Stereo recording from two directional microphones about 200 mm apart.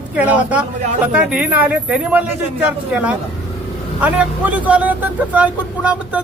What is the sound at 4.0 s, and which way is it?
Speech, 5° right (ahead or behind).